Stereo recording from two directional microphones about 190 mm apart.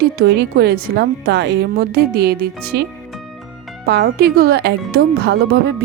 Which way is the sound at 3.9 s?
60° right (ahead or behind).